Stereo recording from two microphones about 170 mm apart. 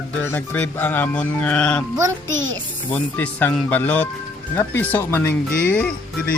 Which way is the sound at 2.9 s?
10° left (ahead or behind).